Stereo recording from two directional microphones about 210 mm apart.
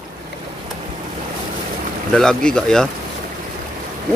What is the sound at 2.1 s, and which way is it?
Speech, centre (ahead or behind).